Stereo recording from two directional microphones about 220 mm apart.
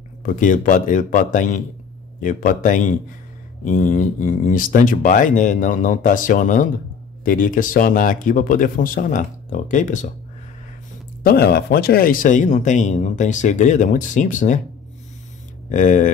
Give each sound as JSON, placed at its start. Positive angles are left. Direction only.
{"t": 0.2, "sound": "speech", "side_deg": 40}
{"t": 11.2, "sound": "speech", "side_deg": 45}
{"t": 15.7, "sound": "speech", "side_deg": 35}